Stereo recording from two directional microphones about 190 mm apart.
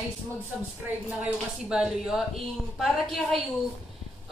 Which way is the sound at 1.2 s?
5° right (ahead or behind).